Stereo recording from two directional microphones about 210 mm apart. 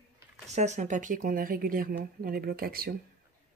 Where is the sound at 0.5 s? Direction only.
35° right (ahead or behind).